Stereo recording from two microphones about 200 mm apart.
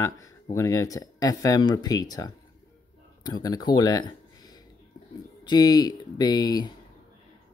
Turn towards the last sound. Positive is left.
turn(degrees=20)  # may be behind; listen again after turning